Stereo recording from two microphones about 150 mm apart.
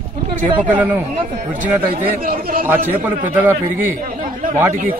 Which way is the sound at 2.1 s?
85° right.